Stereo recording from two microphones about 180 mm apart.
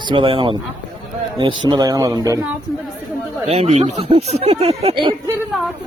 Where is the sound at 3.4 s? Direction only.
35° right (ahead or behind).